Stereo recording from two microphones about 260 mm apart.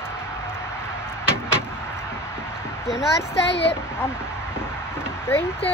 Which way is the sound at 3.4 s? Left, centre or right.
Left.